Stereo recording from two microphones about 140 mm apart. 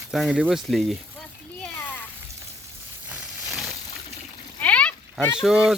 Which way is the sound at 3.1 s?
Centre (ahead or behind).